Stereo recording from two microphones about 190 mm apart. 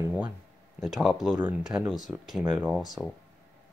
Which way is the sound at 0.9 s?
Centre (ahead or behind).